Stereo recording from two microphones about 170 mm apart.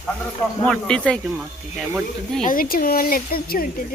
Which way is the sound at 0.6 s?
5° left (ahead or behind).